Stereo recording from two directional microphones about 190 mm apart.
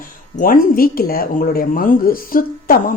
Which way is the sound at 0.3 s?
50° left (ahead or behind).